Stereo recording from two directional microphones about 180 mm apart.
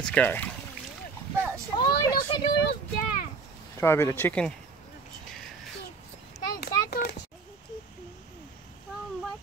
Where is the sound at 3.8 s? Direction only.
15° left (ahead or behind).